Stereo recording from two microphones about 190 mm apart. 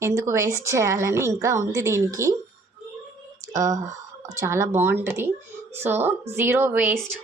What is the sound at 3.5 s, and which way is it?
A woman's voice, 15° right (ahead or behind).